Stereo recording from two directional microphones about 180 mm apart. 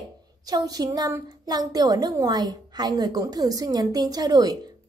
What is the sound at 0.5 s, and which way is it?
A woman's voice, 20° right (ahead or behind).